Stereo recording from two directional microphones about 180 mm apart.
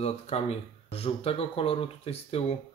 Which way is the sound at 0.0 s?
35° left (ahead or behind).